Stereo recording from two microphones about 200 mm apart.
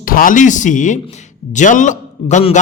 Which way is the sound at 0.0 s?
45° left (ahead or behind).